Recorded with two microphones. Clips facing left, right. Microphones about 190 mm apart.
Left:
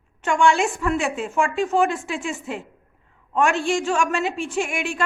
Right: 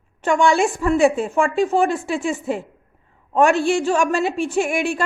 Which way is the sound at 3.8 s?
35° right (ahead or behind).